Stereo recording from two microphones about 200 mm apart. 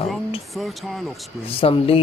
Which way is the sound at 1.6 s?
30° left (ahead or behind).